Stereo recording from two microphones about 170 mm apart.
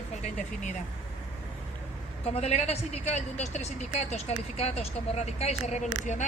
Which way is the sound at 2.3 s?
40° left (ahead or behind).